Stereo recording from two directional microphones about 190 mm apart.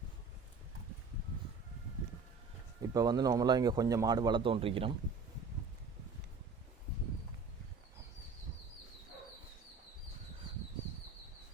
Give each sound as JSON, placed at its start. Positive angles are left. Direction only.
{"t": 2.8, "sound": "speech", "side_deg": -20}